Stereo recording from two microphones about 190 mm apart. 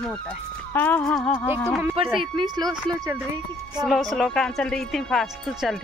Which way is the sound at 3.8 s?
Centre (ahead or behind).